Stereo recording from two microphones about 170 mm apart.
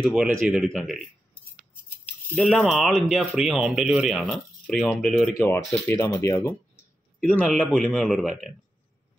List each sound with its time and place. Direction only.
0.0 s speech: centre (ahead or behind)
2.0 s speech: 5° left (ahead or behind)
5.7 s speech: 15° left (ahead or behind)
7.3 s speech: 5° left (ahead or behind)